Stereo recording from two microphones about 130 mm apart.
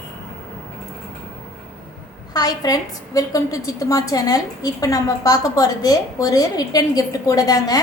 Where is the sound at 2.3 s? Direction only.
30° left (ahead or behind).